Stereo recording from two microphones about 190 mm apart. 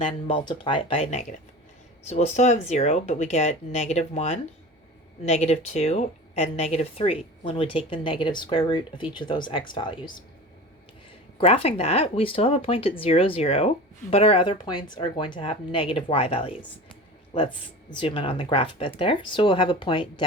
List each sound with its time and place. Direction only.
0.3 s speech: 25° left (ahead or behind)
11.3 s speech: 30° left (ahead or behind)
17.9 s speech: 25° left (ahead or behind)